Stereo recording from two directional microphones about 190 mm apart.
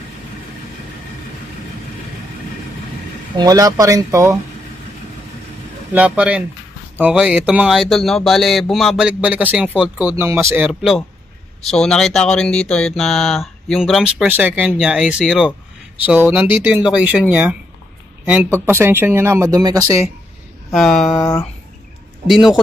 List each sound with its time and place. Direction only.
3.3 s speech: 20° right (ahead or behind)
5.9 s speech: 5° right (ahead or behind)
18.7 s speech: 10° right (ahead or behind)
20.7 s speech: centre (ahead or behind)
21.2 s a sound: 15° left (ahead or behind)
22.3 s speech: centre (ahead or behind)